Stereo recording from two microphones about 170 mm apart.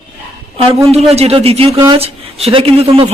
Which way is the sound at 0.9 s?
40° right (ahead or behind).